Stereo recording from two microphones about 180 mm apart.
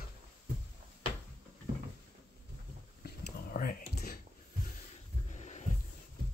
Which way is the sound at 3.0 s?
55° left (ahead or behind).